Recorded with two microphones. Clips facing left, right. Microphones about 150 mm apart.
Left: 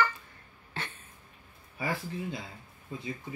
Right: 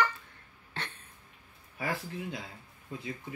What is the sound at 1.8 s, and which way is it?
Speech, centre (ahead or behind).